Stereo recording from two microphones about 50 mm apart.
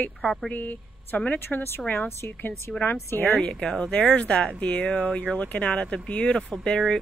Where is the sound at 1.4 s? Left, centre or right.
Left.